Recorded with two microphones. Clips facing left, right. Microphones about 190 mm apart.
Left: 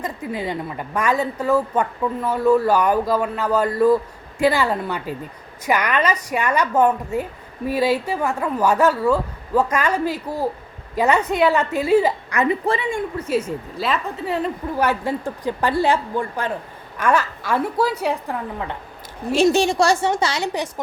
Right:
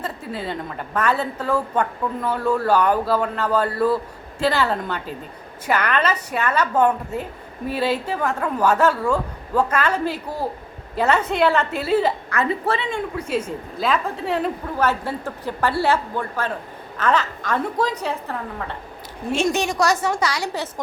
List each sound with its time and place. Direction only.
0.0 s a woman's voice: 15° left (ahead or behind)
13.7 s a woman's voice: centre (ahead or behind)
14.8 s a woman's voice: 15° left (ahead or behind)
19.4 s a woman's voice: 30° left (ahead or behind)